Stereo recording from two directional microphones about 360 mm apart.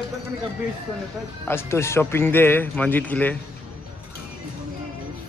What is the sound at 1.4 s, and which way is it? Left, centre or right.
Speech, centre.